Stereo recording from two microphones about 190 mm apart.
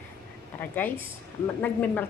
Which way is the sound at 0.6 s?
10° left (ahead or behind).